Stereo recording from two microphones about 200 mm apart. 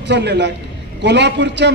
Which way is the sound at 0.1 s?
55° right (ahead or behind).